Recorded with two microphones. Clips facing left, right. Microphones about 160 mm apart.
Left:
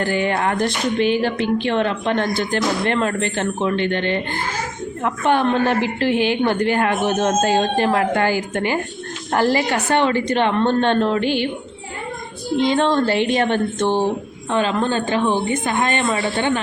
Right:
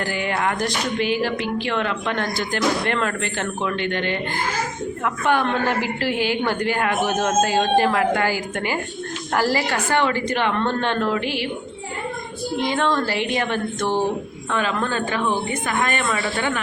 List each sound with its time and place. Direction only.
0.0 s a woman's voice: 25° left (ahead or behind)
12.6 s a woman's voice: 25° left (ahead or behind)